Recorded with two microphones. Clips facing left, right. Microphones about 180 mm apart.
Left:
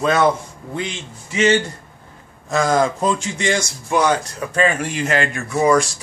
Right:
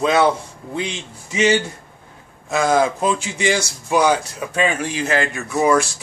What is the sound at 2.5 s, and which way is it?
Speech, 5° right (ahead or behind).